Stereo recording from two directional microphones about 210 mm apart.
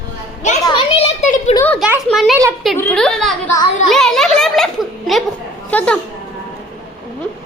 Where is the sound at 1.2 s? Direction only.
35° left (ahead or behind).